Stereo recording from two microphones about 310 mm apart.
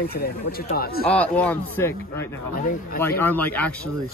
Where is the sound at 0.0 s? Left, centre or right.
Left.